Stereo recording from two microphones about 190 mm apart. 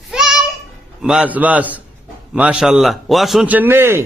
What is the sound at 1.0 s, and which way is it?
A man's voice, 5° right (ahead or behind).